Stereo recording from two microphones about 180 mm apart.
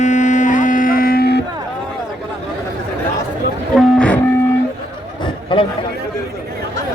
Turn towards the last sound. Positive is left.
turn(degrees=25)  # may be behind; listen again after turning